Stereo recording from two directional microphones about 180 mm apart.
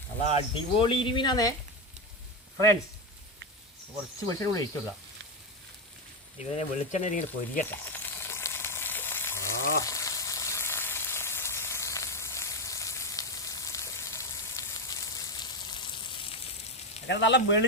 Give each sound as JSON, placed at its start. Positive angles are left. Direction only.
{"t": 0.3, "sound": "speech", "side_deg": 30}
{"t": 4.3, "sound": "speech", "side_deg": 15}
{"t": 6.4, "sound": "speech", "side_deg": 40}
{"t": 7.6, "sound": "frying", "side_deg": 10}
{"t": 17.1, "sound": "speech", "side_deg": 75}